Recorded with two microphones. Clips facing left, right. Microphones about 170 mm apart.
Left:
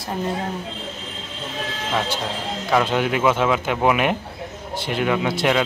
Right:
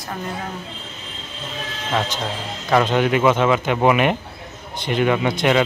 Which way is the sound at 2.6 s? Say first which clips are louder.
Right 3 dB; 5° left (ahead or behind).